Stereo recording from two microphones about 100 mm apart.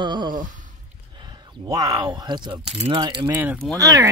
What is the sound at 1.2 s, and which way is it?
Speech, 40° right (ahead or behind).